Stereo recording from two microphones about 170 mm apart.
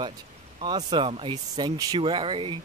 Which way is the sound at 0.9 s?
30° right (ahead or behind).